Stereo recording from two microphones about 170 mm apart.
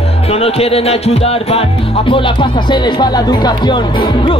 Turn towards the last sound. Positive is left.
turn(degrees=30)  # may be behind; listen again after turning